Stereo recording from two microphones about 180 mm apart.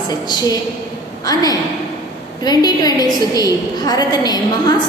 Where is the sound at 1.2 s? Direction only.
20° left (ahead or behind).